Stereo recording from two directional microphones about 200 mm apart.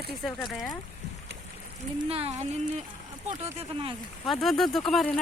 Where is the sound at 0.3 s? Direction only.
Centre (ahead or behind).